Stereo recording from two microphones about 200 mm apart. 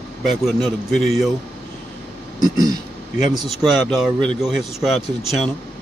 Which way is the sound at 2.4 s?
20° right (ahead or behind).